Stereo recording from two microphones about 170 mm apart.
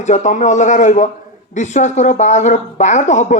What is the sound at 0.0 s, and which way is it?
Speech, 45° left (ahead or behind).